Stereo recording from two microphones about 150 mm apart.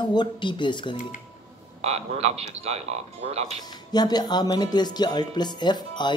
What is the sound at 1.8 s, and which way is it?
Speech, 45° right (ahead or behind).